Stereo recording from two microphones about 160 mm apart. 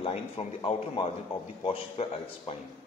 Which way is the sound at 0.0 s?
35° left (ahead or behind).